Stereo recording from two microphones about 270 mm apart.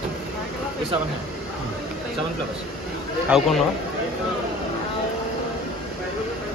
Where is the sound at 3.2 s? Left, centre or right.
Centre.